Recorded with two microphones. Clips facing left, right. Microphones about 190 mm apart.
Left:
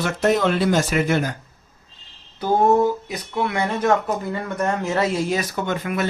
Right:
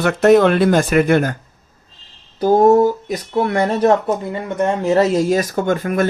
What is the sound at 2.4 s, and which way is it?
Speech, 40° right (ahead or behind).